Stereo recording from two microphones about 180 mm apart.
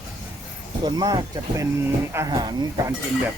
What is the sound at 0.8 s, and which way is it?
Speech, 20° right (ahead or behind).